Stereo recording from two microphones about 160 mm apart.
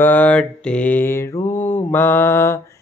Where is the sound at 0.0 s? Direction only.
10° left (ahead or behind).